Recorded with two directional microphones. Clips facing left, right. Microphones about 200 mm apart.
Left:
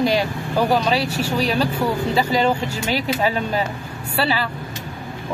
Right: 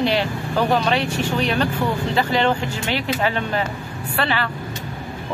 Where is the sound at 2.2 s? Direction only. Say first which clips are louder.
Even; 10° left (ahead or behind).